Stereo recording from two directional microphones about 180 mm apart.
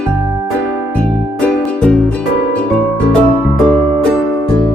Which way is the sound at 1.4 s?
5° left (ahead or behind).